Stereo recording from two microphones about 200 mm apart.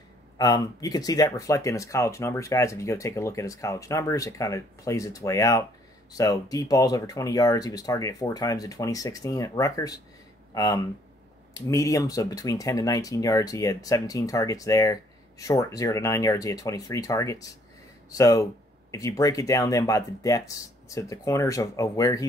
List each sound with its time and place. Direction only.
0.4 s speech: 20° left (ahead or behind)